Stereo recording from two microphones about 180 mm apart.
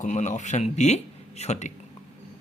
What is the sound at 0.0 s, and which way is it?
Speech, 40° left (ahead or behind).